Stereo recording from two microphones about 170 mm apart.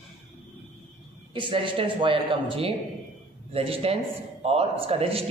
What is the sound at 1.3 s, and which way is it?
A man's voice, 30° right (ahead or behind).